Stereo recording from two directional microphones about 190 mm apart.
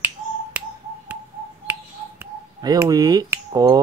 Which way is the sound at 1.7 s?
15° right (ahead or behind).